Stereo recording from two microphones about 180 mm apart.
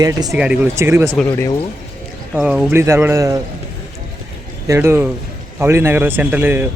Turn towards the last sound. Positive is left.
turn(degrees=-10)  # may be behind; listen again after turning